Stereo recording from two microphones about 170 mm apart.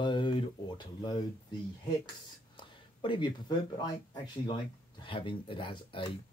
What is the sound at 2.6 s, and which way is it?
Speech, 30° left (ahead or behind).